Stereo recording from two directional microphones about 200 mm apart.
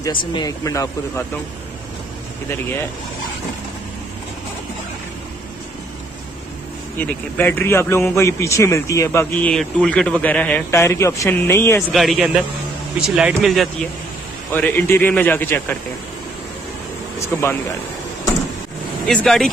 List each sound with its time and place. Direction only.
0.0 s a man's voice: 25° left (ahead or behind)
7.0 s a man's voice: 10° left (ahead or behind)
11.9 s a man's voice: centre (ahead or behind)
17.4 s a man's voice: 10° left (ahead or behind)
19.0 s speech: centre (ahead or behind)